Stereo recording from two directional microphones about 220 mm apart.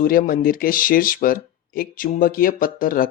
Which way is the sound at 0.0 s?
40° left (ahead or behind).